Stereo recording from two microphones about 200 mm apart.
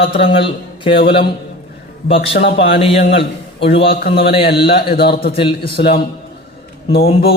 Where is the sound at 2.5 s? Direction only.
30° left (ahead or behind).